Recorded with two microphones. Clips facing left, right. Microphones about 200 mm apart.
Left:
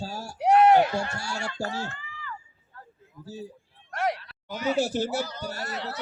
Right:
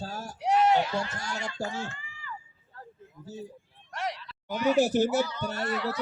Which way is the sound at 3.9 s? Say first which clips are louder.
Left 6 dB; 55° left (ahead or behind).